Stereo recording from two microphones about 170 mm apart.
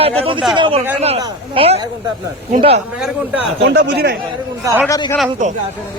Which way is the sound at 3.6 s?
70° right (ahead or behind).